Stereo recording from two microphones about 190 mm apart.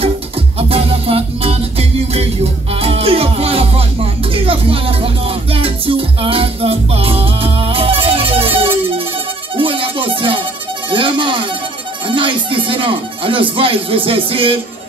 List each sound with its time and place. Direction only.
0.6 s music: 30° right (ahead or behind)
10.9 s a sound: 25° right (ahead or behind)
12.1 s music: 25° right (ahead or behind)